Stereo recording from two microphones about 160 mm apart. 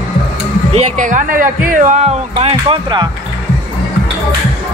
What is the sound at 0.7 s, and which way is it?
Speech, 55° right (ahead or behind).